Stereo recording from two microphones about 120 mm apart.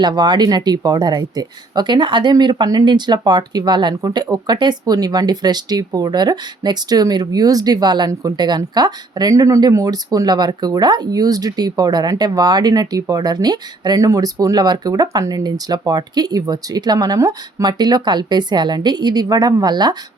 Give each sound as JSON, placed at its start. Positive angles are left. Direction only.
{"t": 0.0, "sound": "speech", "side_deg": -35}